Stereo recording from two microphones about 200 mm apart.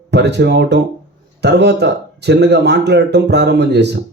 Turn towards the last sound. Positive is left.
turn(degrees=-60)  # may be behind; listen again after turning